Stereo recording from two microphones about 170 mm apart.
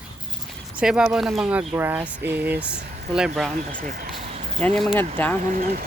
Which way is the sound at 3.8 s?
60° right (ahead or behind).